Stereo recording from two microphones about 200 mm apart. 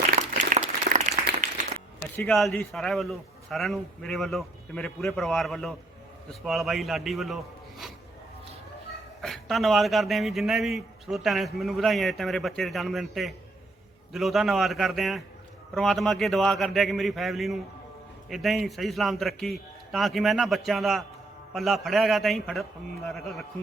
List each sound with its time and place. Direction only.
0.2 s applause: 40° right (ahead or behind)
2.1 s a man's voice: centre (ahead or behind)
9.2 s a man's voice: centre (ahead or behind)